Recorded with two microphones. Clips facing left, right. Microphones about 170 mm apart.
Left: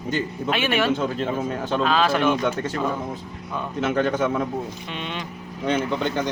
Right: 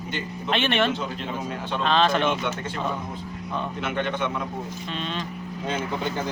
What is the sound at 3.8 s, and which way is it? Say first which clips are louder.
Speech: left 8 dB; 40° left (ahead or behind).